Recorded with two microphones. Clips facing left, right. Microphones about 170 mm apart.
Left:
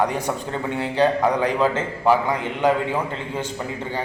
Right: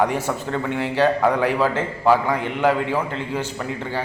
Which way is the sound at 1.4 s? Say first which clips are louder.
Even; 10° right (ahead or behind).